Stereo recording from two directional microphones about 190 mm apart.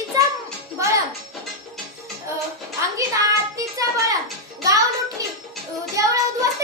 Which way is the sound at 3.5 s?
15° right (ahead or behind).